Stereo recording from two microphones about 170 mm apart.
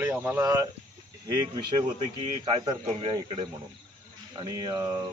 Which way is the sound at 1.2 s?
25° right (ahead or behind).